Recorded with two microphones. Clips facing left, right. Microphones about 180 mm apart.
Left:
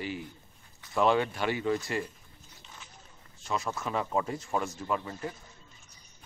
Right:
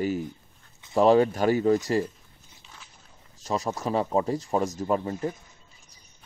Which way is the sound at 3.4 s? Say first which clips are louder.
Right 5 dB; 40° right (ahead or behind).